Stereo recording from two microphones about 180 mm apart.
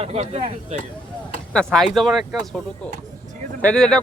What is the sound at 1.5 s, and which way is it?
Speech, centre (ahead or behind).